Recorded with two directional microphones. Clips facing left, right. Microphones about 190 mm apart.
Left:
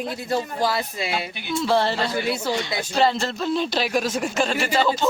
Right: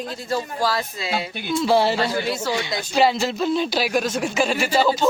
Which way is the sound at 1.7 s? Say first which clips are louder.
Right 3 dB; 5° right (ahead or behind).